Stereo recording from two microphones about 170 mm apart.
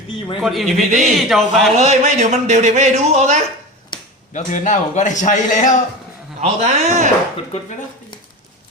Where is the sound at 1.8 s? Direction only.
40° right (ahead or behind).